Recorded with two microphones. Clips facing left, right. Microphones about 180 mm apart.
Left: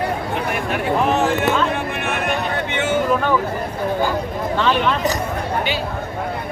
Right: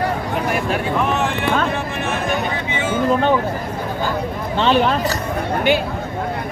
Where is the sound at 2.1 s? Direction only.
65° left (ahead or behind).